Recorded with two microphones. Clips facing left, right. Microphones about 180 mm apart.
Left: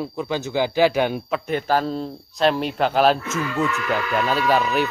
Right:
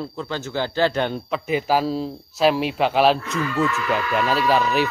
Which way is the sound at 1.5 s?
5° right (ahead or behind).